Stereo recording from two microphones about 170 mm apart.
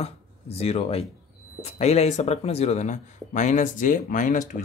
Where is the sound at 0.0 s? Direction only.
40° left (ahead or behind).